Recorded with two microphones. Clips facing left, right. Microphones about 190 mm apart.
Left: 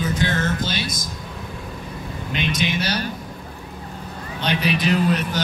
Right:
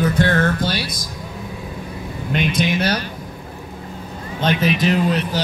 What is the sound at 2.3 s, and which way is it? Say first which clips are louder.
Speech: right 4 dB; 50° right (ahead or behind).